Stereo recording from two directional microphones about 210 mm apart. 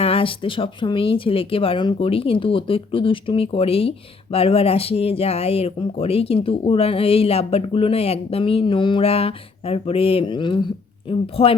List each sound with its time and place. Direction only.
0.0 s speech: 25° left (ahead or behind)